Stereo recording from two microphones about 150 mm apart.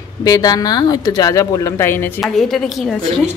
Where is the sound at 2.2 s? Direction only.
Centre (ahead or behind).